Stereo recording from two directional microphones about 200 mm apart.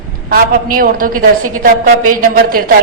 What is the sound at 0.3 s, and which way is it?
Speech, 45° right (ahead or behind).